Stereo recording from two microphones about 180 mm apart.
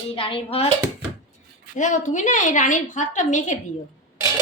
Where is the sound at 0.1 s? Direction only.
30° left (ahead or behind).